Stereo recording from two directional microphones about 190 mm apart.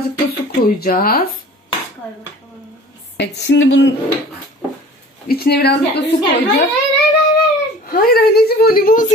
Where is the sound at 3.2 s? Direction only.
65° left (ahead or behind).